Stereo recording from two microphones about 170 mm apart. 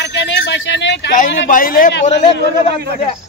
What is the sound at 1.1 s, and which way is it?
Speech, 50° left (ahead or behind).